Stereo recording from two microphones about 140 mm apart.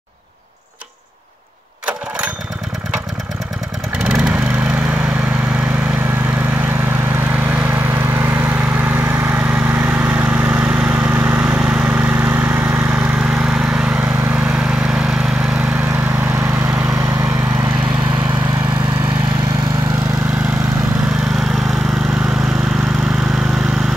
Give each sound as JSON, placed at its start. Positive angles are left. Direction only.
{"t": 4.0, "sound": "vehicle", "side_deg": -5}
{"t": 7.4, "sound": "vehicle", "side_deg": -10}